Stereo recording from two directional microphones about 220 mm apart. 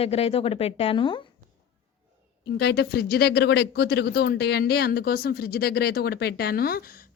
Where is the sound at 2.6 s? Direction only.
50° left (ahead or behind).